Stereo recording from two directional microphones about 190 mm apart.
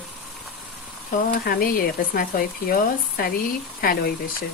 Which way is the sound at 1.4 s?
50° left (ahead or behind).